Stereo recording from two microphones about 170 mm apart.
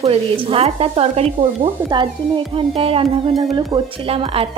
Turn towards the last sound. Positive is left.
turn(degrees=-35)  # may be behind; listen again after turning